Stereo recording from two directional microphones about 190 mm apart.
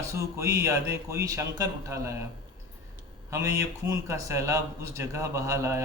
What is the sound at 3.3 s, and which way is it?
A man's voice, 15° right (ahead or behind).